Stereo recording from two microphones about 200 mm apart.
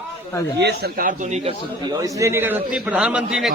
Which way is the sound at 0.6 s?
55° right (ahead or behind).